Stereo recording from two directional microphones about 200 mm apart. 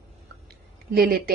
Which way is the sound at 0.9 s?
45° right (ahead or behind).